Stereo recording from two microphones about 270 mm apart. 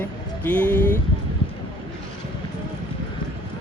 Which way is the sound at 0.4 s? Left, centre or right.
Centre.